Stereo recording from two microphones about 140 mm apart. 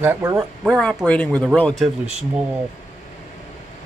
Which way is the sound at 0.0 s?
15° right (ahead or behind).